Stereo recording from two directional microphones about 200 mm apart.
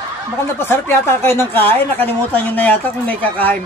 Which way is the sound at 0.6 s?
10° left (ahead or behind).